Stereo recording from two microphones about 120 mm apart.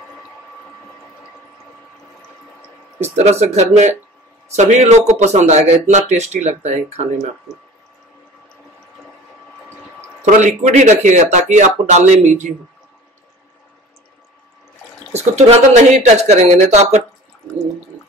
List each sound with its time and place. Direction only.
3.0 s a man's voice: 65° right (ahead or behind)
10.2 s speech: 85° right
15.1 s a man's voice: 65° right (ahead or behind)